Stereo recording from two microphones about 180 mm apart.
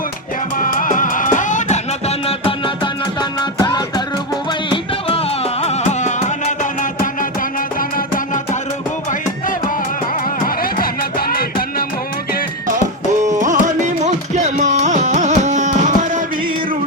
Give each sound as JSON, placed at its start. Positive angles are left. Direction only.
{"t": 0.6, "sound": "music", "side_deg": 50}
{"t": 10.4, "sound": "music", "side_deg": 55}
{"t": 13.4, "sound": "carnatic music", "side_deg": -45}